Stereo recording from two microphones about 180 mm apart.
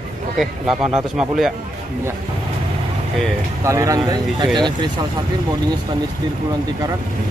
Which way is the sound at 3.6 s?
15° right (ahead or behind).